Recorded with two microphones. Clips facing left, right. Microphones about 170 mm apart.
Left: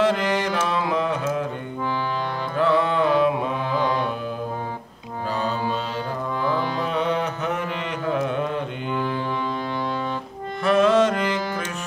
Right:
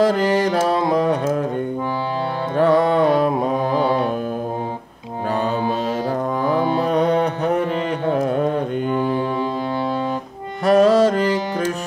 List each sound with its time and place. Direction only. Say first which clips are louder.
0.0 s music: right 5 dB; 35° right (ahead or behind)
2.5 s music: right 5 dB; 40° right (ahead or behind)
6.4 s music: right 5 dB; 45° right (ahead or behind)
8.1 s carnatic music: right 4 dB; 40° right (ahead or behind)
10.6 s music: right 4 dB; 35° right (ahead or behind)